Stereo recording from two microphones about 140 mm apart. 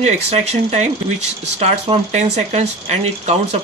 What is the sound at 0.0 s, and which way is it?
Speech, 50° right (ahead or behind).